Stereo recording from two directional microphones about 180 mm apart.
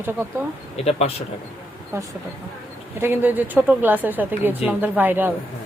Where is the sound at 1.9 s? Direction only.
15° right (ahead or behind).